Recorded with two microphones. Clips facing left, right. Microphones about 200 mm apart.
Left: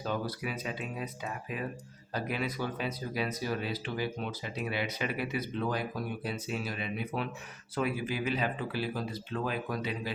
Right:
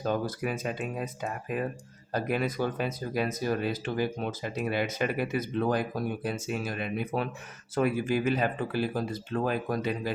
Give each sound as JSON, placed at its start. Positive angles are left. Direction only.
{"t": 0.0, "sound": "speech", "side_deg": -50}